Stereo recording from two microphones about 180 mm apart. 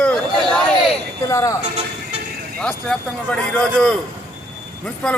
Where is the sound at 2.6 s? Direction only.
5° left (ahead or behind).